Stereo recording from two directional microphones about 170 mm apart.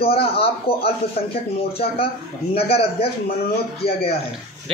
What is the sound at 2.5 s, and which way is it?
Speech, 35° left (ahead or behind).